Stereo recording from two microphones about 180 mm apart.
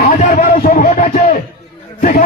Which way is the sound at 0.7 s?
40° left (ahead or behind).